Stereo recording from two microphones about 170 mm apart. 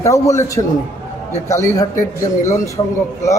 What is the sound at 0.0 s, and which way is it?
A man's voice, 20° left (ahead or behind).